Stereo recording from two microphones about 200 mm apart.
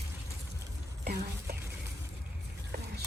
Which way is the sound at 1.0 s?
50° right (ahead or behind).